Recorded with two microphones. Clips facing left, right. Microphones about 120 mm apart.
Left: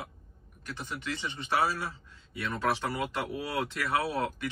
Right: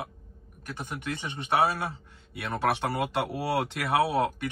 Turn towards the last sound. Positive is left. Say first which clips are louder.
# right 6 dB
turn(degrees=-60)  # may be behind; listen again after turning